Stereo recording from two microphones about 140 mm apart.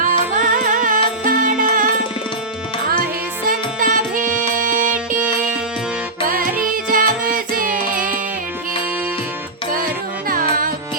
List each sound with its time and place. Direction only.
0.0 s music: 75° right (ahead or behind)
3.8 s music: 70° right (ahead or behind)
6.2 s music: 90° right
6.7 s music: 80° right